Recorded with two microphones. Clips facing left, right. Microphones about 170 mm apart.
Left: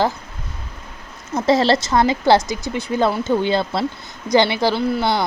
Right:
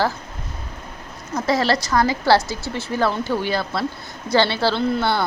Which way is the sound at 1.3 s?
25° left (ahead or behind).